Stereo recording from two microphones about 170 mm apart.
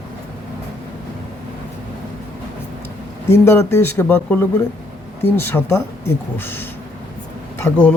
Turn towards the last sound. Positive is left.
turn(degrees=10)  # may be behind; listen again after turning